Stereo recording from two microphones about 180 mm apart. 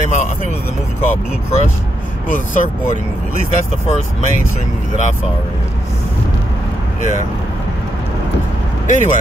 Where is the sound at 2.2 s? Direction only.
45° left (ahead or behind).